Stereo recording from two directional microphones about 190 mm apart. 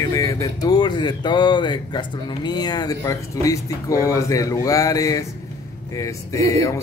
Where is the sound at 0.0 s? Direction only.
15° left (ahead or behind).